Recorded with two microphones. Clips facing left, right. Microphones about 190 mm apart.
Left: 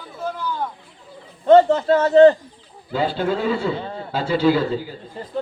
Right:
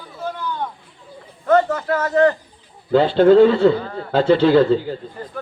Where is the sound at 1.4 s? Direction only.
30° left (ahead or behind).